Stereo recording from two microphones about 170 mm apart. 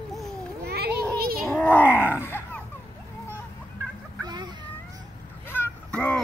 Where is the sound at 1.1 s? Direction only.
60° right (ahead or behind).